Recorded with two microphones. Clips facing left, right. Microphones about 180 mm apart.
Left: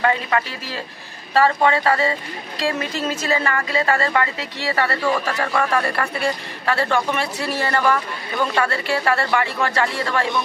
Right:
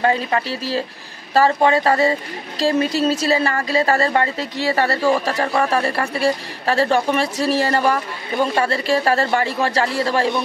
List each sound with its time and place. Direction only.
0.0 s speech: 30° right (ahead or behind)